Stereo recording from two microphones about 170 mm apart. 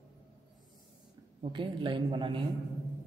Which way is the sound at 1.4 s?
30° right (ahead or behind).